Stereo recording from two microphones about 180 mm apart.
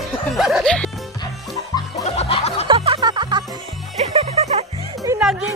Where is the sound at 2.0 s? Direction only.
35° left (ahead or behind).